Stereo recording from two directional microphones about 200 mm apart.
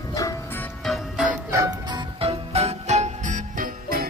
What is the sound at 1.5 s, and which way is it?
Music, 20° right (ahead or behind).